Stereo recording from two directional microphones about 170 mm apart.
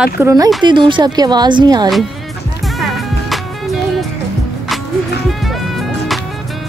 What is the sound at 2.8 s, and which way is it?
Music, centre (ahead or behind).